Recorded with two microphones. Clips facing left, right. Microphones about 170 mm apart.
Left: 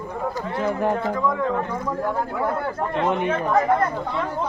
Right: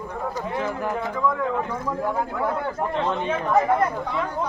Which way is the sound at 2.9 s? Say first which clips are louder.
Left 5 dB; 15° left (ahead or behind).